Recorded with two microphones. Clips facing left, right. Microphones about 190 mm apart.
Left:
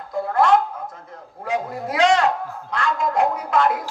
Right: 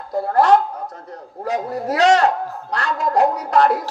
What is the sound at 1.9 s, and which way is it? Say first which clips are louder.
Speech: right 3 dB; 40° right (ahead or behind).